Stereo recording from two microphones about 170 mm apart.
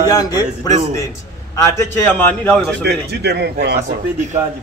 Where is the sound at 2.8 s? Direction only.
75° right (ahead or behind).